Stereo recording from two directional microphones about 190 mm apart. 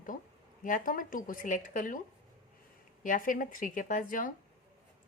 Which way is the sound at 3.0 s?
45° left (ahead or behind).